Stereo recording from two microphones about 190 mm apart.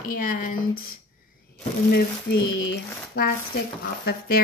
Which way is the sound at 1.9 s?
55° left (ahead or behind).